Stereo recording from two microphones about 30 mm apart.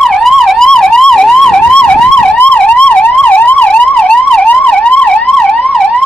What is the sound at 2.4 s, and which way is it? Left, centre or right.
Emergency vehicle, left.